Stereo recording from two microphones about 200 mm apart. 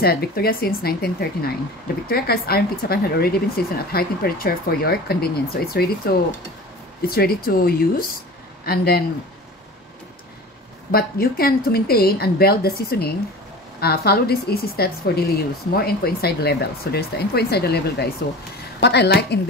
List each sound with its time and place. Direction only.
0.0 s speech: 50° left (ahead or behind)
10.9 s a woman's voice: 50° left (ahead or behind)